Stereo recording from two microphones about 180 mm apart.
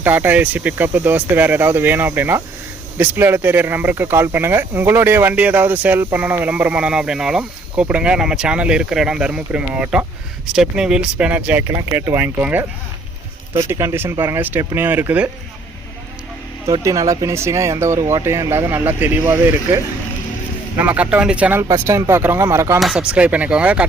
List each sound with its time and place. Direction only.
0.0 s speech: 10° right (ahead or behind)
16.6 s speech: 20° right (ahead or behind)
22.8 s speech: 5° right (ahead or behind)